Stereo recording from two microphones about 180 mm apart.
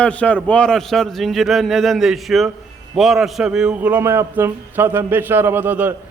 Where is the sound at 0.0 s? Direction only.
5° left (ahead or behind).